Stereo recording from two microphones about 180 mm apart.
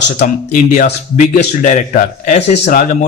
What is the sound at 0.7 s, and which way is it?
A man's voice, 50° left (ahead or behind).